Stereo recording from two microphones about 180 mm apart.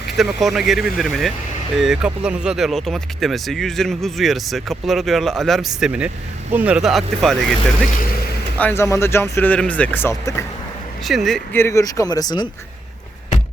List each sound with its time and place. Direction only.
0.2 s speech: centre (ahead or behind)
8.5 s speech: 10° left (ahead or behind)
11.0 s speech: centre (ahead or behind)
11.5 s speech: 15° left (ahead or behind)